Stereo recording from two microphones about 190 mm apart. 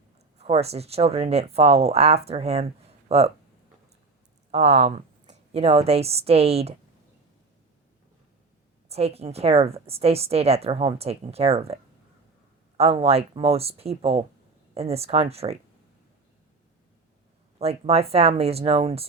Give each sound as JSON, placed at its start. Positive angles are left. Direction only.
{"t": 0.3, "sound": "speech", "side_deg": -35}
{"t": 4.5, "sound": "a woman's voice", "side_deg": -35}
{"t": 8.9, "sound": "speech", "side_deg": -30}
{"t": 17.6, "sound": "speech", "side_deg": -35}